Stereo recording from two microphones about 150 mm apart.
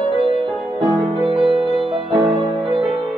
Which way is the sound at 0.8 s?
Centre (ahead or behind).